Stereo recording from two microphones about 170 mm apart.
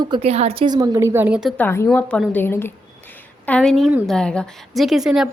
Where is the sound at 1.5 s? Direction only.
15° left (ahead or behind).